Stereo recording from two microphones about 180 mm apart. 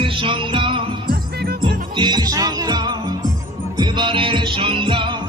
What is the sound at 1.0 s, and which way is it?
Music, 60° right (ahead or behind).